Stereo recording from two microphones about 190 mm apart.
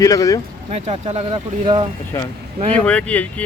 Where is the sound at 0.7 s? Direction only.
35° right (ahead or behind).